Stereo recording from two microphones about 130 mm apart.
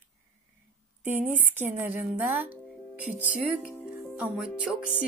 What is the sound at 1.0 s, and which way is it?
Speech, 15° right (ahead or behind).